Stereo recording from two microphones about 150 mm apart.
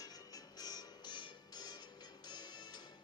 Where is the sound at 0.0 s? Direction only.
25° left (ahead or behind).